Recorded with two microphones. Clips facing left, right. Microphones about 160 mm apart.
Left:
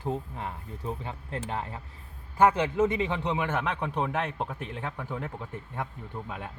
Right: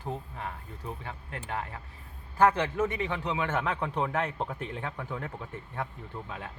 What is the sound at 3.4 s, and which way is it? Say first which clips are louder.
Speech: even; 10° left (ahead or behind).